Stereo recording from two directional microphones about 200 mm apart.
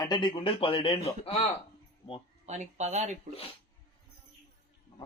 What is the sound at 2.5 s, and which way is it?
Speech, 35° right (ahead or behind).